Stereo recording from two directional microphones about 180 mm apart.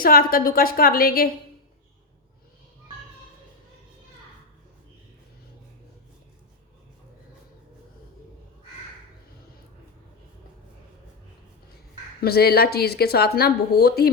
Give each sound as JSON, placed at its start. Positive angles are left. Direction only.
{"t": 0.0, "sound": "speech", "side_deg": 55}
{"t": 12.2, "sound": "speech", "side_deg": 60}